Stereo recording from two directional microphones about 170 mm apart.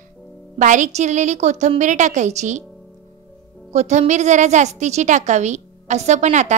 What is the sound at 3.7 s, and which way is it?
A woman's voice, 40° right (ahead or behind).